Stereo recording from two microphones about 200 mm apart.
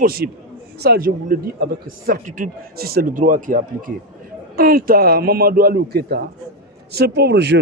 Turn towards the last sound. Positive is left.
turn(degrees=-60)  # may be behind; listen again after turning